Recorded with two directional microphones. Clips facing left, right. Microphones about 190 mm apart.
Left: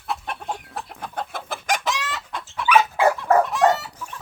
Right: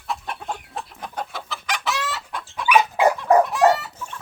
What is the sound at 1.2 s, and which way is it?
Chicken, 50° left (ahead or behind).